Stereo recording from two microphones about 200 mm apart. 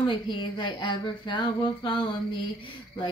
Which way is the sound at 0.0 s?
25° left (ahead or behind).